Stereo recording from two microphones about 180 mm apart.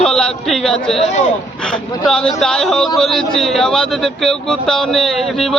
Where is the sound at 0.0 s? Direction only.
5° left (ahead or behind).